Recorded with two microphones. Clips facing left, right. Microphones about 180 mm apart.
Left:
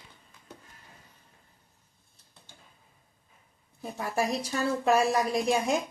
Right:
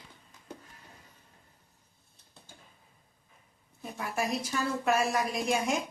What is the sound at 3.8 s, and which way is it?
Speech, 35° left (ahead or behind).